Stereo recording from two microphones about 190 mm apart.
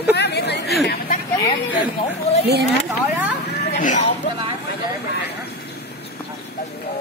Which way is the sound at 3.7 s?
45° left (ahead or behind).